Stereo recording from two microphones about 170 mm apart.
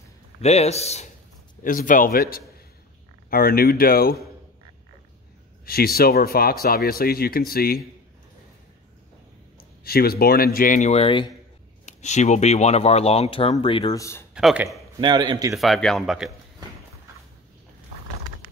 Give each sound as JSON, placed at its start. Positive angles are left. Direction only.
{"t": 0.4, "sound": "speech", "side_deg": 40}
{"t": 1.6, "sound": "speech", "side_deg": 50}
{"t": 5.7, "sound": "speech", "side_deg": 65}
{"t": 9.6, "sound": "speech", "side_deg": 65}
{"t": 11.8, "sound": "speech", "side_deg": 45}
{"t": 13.9, "sound": "speech", "side_deg": 15}
{"t": 14.3, "sound": "speech", "side_deg": -5}
{"t": 15.0, "sound": "a man's voice", "side_deg": -25}
{"t": 15.5, "sound": "speech", "side_deg": 0}